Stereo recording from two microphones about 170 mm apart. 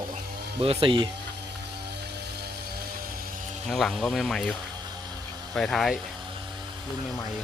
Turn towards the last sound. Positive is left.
turn(degrees=0)  # may be behind; listen again after turning